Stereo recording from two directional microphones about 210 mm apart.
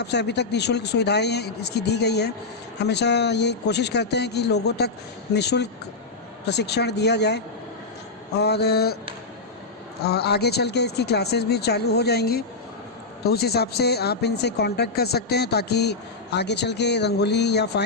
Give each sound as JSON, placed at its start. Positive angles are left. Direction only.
{"t": 0.0, "sound": "speech", "side_deg": 55}
{"t": 10.0, "sound": "speech", "side_deg": 50}